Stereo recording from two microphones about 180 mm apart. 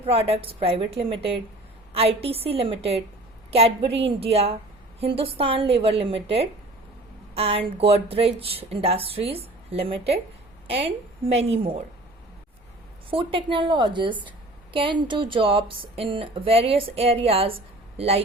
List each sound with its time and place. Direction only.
0.0 s speech: 30° right (ahead or behind)
13.1 s a man's voice: 30° right (ahead or behind)